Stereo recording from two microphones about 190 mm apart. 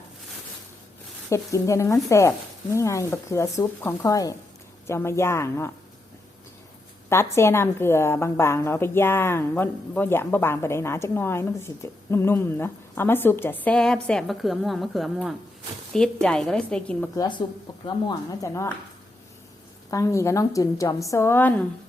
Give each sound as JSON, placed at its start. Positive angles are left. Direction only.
{"t": 1.3, "sound": "a woman's voice", "side_deg": 15}
{"t": 7.1, "sound": "a woman's voice", "side_deg": 15}
{"t": 17.2, "sound": "a woman's voice", "side_deg": 25}
{"t": 19.9, "sound": "a woman's voice", "side_deg": 15}